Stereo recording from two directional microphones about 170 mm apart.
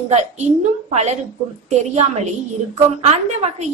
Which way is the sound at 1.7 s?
40° right (ahead or behind).